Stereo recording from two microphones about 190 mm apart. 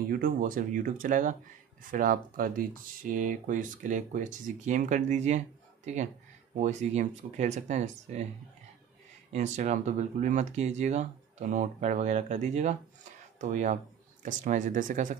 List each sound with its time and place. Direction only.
0.1 s speech: 45° right (ahead or behind)
9.3 s speech: 35° right (ahead or behind)